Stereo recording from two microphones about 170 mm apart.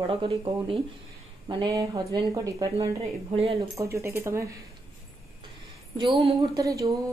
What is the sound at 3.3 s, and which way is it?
Speech, 35° right (ahead or behind).